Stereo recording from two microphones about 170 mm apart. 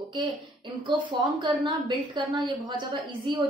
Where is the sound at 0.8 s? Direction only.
25° right (ahead or behind).